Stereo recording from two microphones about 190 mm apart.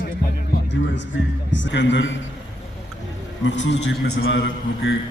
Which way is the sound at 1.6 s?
70° left (ahead or behind).